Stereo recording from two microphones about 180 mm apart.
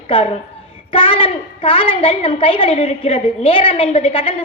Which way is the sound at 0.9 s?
30° left (ahead or behind).